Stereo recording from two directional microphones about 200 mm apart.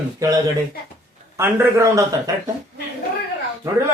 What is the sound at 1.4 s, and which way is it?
Speech, 10° right (ahead or behind).